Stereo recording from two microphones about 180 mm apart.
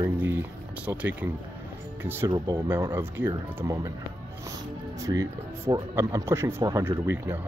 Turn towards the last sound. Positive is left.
turn(degrees=-15)  # may be behind; listen again after turning